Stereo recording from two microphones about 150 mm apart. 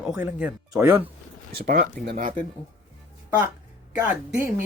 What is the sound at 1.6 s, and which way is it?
Speech, 90° right.